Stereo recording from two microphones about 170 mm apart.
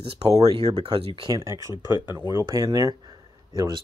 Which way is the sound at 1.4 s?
15° right (ahead or behind).